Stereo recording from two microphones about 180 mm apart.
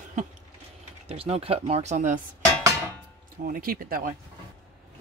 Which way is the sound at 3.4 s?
55° right (ahead or behind).